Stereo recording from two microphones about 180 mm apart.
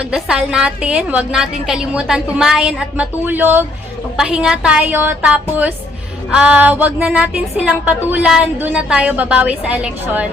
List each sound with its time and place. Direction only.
0.0 s a woman's voice: 5° right (ahead or behind)